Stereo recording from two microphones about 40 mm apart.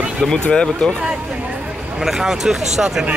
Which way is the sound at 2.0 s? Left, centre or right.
Centre.